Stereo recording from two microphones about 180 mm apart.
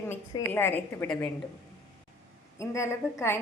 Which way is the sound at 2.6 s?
15° left (ahead or behind).